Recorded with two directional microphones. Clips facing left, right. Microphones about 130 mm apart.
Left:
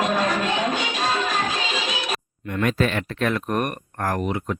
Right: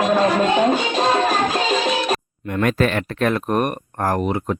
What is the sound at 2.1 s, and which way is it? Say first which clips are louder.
Speech: right 6 dB; 50° right (ahead or behind).